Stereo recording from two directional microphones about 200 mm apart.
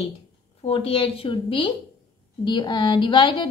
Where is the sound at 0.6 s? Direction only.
30° left (ahead or behind).